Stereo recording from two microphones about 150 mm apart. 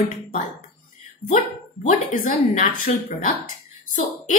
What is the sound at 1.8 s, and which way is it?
Speech, 65° left (ahead or behind).